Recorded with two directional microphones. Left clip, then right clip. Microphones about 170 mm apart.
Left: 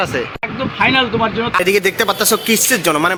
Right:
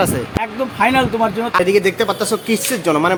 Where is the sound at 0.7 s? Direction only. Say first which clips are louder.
Left 1 dB; 25° right (ahead or behind).